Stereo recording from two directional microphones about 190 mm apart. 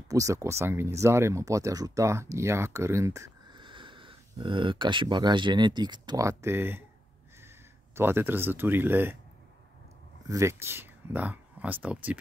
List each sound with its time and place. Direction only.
0.1 s speech: 15° right (ahead or behind)
7.9 s speech: 10° right (ahead or behind)
10.2 s speech: 15° right (ahead or behind)